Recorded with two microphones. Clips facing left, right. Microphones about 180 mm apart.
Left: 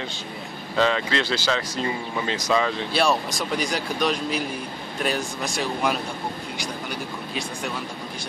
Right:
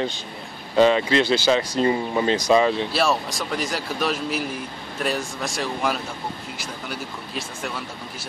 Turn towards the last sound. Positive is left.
turn(degrees=0)  # may be behind; listen again after turning